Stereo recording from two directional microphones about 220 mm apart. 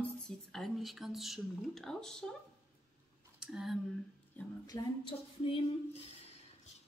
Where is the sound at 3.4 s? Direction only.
Centre (ahead or behind).